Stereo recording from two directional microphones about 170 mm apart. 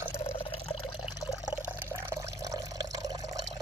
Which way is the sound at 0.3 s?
30° left (ahead or behind).